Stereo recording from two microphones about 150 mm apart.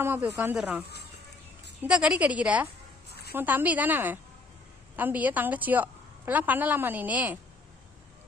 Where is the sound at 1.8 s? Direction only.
5° right (ahead or behind).